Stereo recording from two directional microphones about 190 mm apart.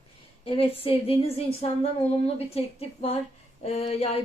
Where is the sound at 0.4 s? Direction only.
30° left (ahead or behind).